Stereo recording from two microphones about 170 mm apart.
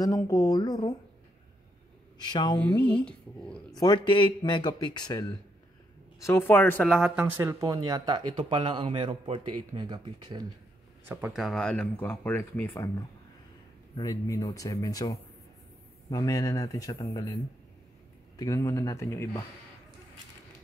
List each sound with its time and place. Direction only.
0.0 s speech: 20° left (ahead or behind)
2.2 s speech: 25° left (ahead or behind)
2.5 s speech: 10° left (ahead or behind)
3.7 s speech: 25° left (ahead or behind)
6.2 s speech: 15° left (ahead or behind)
6.9 s speech: 5° right (ahead or behind)
7.3 s speech: 20° right (ahead or behind)
11.1 s speech: 10° right (ahead or behind); by 12.7 s 10° left (ahead or behind)
13.9 s speech: 20° left (ahead or behind)